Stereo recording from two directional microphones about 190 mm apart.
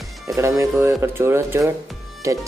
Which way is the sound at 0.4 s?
15° right (ahead or behind).